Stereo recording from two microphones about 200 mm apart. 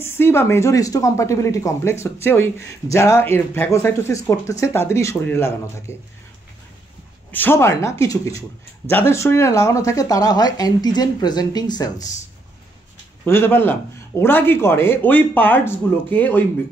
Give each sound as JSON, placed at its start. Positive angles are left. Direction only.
{"t": 0.0, "sound": "speech", "side_deg": 10}
{"t": 7.2, "sound": "speech", "side_deg": 10}
{"t": 13.2, "sound": "speech", "side_deg": 10}